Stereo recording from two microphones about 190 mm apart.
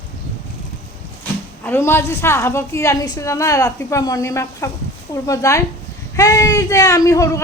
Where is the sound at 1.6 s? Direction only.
10° left (ahead or behind).